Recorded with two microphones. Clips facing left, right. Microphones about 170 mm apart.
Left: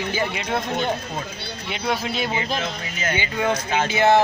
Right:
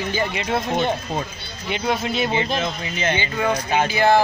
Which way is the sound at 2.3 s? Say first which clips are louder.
Right 3 dB; 25° right (ahead or behind).